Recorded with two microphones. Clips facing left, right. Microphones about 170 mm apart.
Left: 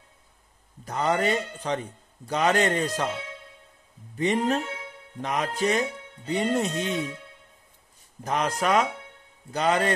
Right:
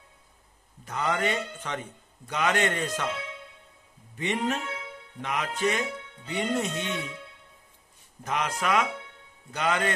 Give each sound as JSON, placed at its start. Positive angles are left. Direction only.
{"t": 0.8, "sound": "speech", "side_deg": 35}
{"t": 4.2, "sound": "speech", "side_deg": 35}
{"t": 8.2, "sound": "speech", "side_deg": 35}